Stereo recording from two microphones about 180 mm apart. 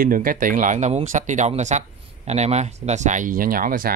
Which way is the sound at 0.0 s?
50° right (ahead or behind).